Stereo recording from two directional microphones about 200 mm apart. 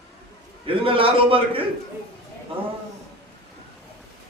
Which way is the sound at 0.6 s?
25° right (ahead or behind).